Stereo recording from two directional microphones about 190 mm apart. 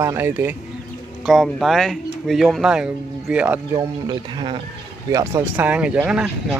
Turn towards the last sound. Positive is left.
turn(degrees=-5)  # may be behind; listen again after turning